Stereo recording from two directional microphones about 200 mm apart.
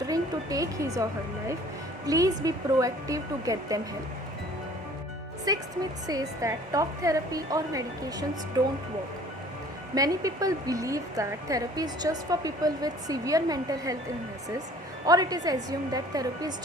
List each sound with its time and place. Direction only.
0.1 s a sound: 15° right (ahead or behind)
2.0 s a woman's voice: 15° right (ahead or behind)
5.5 s a woman's voice: 20° right (ahead or behind)
9.9 s a woman's voice: 20° right (ahead or behind)
15.0 s a woman's voice: 20° right (ahead or behind)